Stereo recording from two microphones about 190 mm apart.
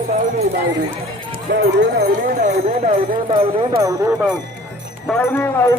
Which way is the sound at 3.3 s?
30° right (ahead or behind).